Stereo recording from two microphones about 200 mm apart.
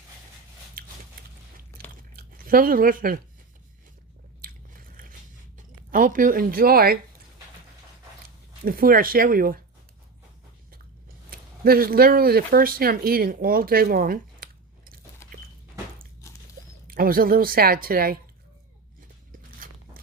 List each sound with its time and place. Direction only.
0.8 s a sound: 45° right (ahead or behind)
2.1 s speech: 45° right (ahead or behind)
4.4 s biting: 45° right (ahead or behind)
5.5 s speech: 40° right (ahead or behind)
8.6 s a woman's voice: 45° right (ahead or behind)
11.3 s speech: 50° right (ahead or behind)
16.2 s a sound: 15° left (ahead or behind)
16.8 s a woman's voice: 45° right (ahead or behind)